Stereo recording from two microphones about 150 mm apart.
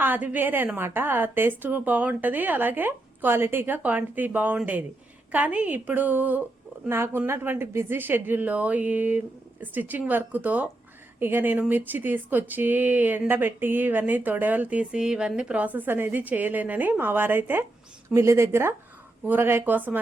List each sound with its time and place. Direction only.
0.0 s speech: 10° right (ahead or behind)